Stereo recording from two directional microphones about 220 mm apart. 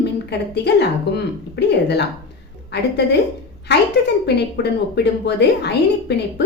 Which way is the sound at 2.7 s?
50° left (ahead or behind).